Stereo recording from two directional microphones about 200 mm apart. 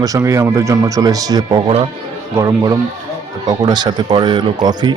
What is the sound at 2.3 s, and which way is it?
Speech, 15° right (ahead or behind).